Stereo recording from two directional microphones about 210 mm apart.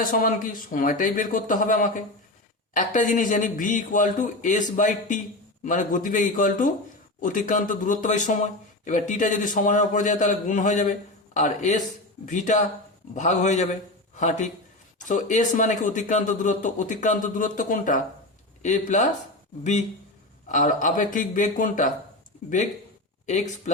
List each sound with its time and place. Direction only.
0.0 s speech: 40° left (ahead or behind)
20.5 s speech: 35° left (ahead or behind)
23.2 s speech: 35° left (ahead or behind)